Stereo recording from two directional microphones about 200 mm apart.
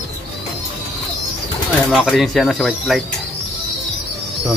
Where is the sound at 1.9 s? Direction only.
Centre (ahead or behind).